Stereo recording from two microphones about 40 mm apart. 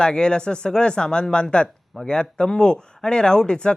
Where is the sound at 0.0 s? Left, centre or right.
Left.